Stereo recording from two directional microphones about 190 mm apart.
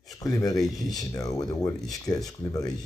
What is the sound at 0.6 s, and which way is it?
Speech, centre (ahead or behind).